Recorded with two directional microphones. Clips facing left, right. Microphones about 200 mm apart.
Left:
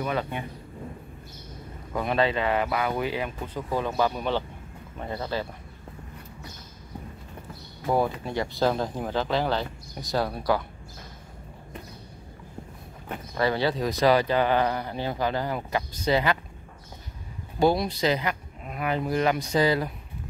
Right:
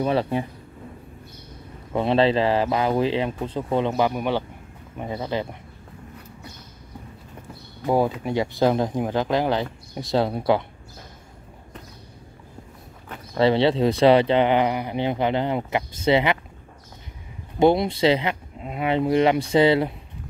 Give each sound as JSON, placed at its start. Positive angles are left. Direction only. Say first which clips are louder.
{"t": 0.0, "sound": "speech", "louder": "right 7 dB", "side_deg": -30}
{"t": 1.9, "sound": "speech", "louder": "right 6 dB", "side_deg": -25}
{"t": 7.8, "sound": "speech", "louder": "right 4 dB", "side_deg": -15}
{"t": 13.4, "sound": "speech", "louder": "right 7 dB", "side_deg": -25}
{"t": 17.6, "sound": "speech", "louder": "right 5 dB", "side_deg": -25}